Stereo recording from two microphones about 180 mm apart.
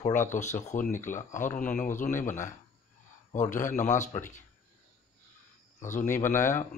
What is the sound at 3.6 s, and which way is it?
Speech, 45° left (ahead or behind).